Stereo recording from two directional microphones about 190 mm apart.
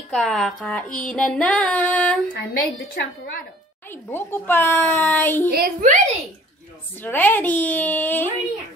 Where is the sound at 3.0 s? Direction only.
60° left (ahead or behind).